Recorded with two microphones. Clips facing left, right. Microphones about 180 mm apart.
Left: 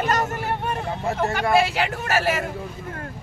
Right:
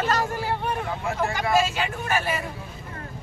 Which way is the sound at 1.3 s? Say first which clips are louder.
Left 3 dB; 65° left (ahead or behind).